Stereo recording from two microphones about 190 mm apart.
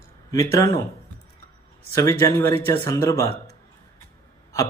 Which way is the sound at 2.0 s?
15° left (ahead or behind).